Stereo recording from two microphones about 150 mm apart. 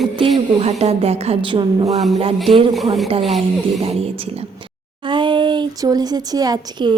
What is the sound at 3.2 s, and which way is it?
Speech, centre (ahead or behind).